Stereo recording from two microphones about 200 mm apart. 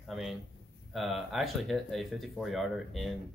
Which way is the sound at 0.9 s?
Centre (ahead or behind).